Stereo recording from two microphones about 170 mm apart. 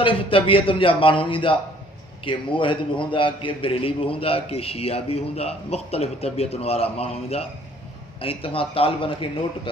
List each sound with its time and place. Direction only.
0.0 s a man's voice: 30° left (ahead or behind)